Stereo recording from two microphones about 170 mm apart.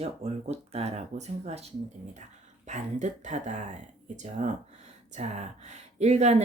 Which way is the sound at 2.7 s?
45° right (ahead or behind).